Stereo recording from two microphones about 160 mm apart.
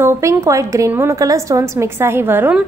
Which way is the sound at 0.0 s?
15° right (ahead or behind).